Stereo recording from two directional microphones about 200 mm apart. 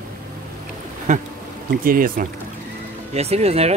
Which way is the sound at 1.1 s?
40° right (ahead or behind).